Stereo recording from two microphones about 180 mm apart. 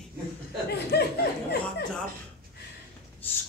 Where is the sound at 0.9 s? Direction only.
65° left (ahead or behind).